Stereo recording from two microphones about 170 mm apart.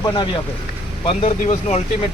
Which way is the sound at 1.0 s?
35° left (ahead or behind).